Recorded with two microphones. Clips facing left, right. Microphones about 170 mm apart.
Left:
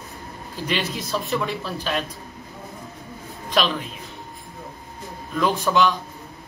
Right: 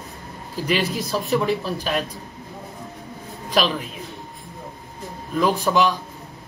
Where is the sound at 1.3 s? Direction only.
10° right (ahead or behind).